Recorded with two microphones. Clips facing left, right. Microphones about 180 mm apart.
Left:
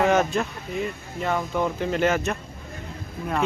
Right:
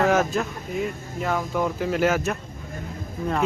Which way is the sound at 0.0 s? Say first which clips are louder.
Even; centre (ahead or behind).